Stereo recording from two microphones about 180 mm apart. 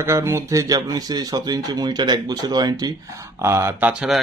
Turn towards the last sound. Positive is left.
turn(degrees=-5)  # may be behind; listen again after turning